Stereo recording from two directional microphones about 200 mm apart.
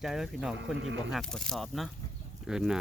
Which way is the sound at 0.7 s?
65° right (ahead or behind).